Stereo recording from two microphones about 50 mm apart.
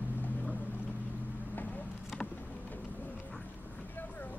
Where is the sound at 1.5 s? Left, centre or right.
Left.